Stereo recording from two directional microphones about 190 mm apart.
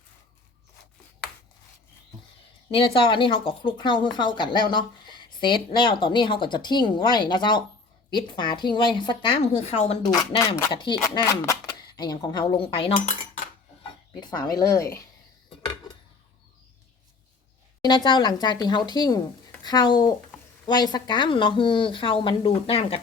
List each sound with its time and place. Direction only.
2.6 s speech: 30° left (ahead or behind)
10.0 s a woman's voice: 15° left (ahead or behind)
10.8 s a woman's voice: 25° left (ahead or behind)
14.2 s a woman's voice: 20° left (ahead or behind)
17.8 s speech: 25° left (ahead or behind)